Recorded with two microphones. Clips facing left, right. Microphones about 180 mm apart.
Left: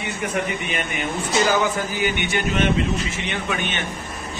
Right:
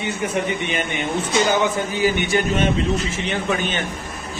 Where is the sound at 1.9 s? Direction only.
35° right (ahead or behind).